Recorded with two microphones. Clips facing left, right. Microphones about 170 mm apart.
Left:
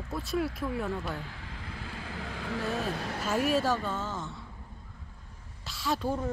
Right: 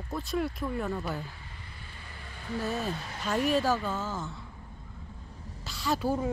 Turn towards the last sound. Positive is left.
turn(degrees=-5)  # may be behind; listen again after turning